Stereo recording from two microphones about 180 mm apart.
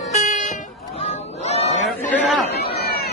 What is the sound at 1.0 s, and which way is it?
Honk, 35° left (ahead or behind).